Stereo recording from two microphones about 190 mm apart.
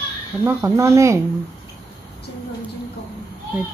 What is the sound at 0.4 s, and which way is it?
Speech, 15° right (ahead or behind).